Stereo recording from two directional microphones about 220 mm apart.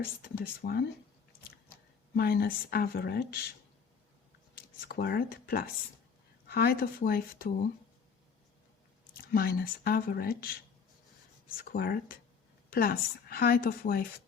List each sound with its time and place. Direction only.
0.0 s a woman's voice: 45° left (ahead or behind)
2.1 s a woman's voice: 45° left (ahead or behind)
4.5 s a woman's voice: 40° left (ahead or behind)
9.3 s a woman's voice: 45° left (ahead or behind)
11.7 s a woman's voice: 45° left (ahead or behind)